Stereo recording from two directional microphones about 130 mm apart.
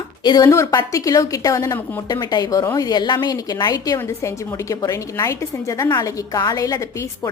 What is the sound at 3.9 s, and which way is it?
A woman's voice, 20° left (ahead or behind).